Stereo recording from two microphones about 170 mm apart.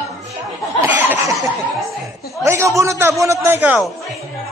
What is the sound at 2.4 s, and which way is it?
A man's voice, 15° right (ahead or behind).